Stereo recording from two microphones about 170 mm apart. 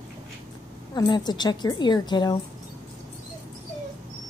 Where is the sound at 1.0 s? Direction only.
25° left (ahead or behind).